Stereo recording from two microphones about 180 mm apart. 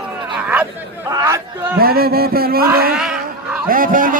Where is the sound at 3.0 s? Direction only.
5° right (ahead or behind).